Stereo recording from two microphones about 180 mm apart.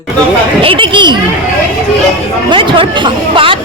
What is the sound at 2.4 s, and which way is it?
Speech, 25° right (ahead or behind).